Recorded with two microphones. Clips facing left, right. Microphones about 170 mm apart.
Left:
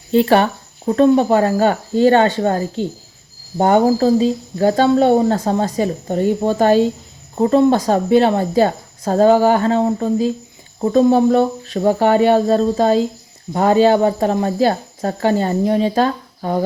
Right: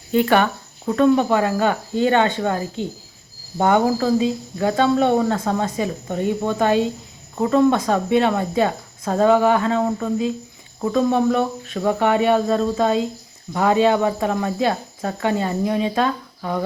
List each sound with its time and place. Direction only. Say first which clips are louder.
0.1 s speech: left 4 dB; 30° left (ahead or behind)